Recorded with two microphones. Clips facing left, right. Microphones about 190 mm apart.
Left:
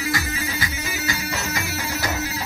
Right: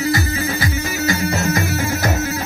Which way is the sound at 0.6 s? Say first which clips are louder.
Right 8 dB; 50° right (ahead or behind).